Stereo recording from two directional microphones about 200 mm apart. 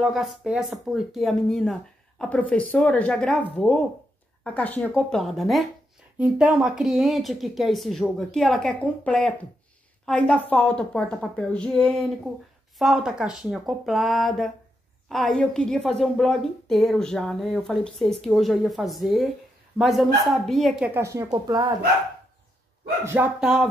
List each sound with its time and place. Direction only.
0.0 s a woman's voice: centre (ahead or behind)
20.9 s speech: 15° right (ahead or behind)
23.0 s speech: 10° right (ahead or behind)